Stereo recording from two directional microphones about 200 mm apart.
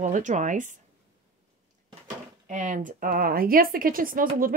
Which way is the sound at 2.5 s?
40° right (ahead or behind).